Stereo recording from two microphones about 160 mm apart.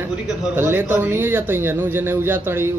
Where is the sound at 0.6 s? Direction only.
15° right (ahead or behind).